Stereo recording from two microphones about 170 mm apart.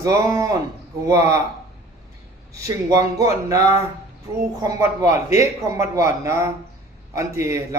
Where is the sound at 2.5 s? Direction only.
20° right (ahead or behind).